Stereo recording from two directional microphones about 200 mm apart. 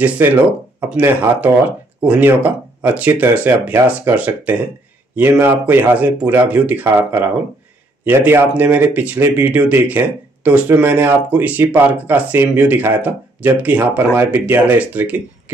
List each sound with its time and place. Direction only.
0.2 s speech: 10° right (ahead or behind)
8.0 s speech: 10° right (ahead or behind)